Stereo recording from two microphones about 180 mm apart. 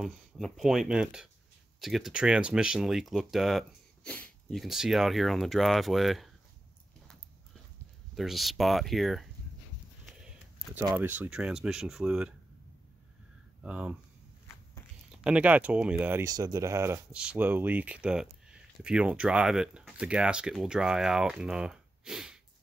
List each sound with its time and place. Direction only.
0.0 s speech: centre (ahead or behind)
8.1 s speech: centre (ahead or behind)
10.0 s a sound: 5° right (ahead or behind)
11.0 s speech: 10° right (ahead or behind)
13.6 s speech: 5° right (ahead or behind)
15.0 s speech: 5° right (ahead or behind)